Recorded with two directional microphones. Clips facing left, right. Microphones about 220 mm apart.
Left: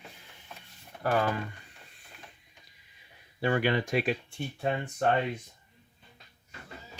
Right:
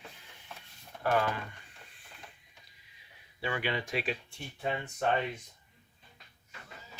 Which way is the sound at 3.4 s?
45° left (ahead or behind).